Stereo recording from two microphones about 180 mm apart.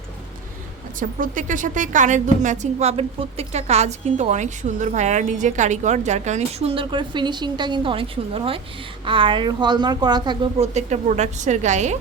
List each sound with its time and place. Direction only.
0.9 s a woman's voice: 45° right (ahead or behind); by 10.5 s 25° right (ahead or behind)
10.6 s a woman's voice: 40° right (ahead or behind)